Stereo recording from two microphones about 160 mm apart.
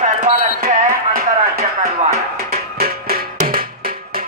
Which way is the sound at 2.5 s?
70° right (ahead or behind).